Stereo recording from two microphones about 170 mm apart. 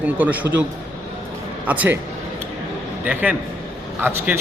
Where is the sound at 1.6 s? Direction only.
10° right (ahead or behind).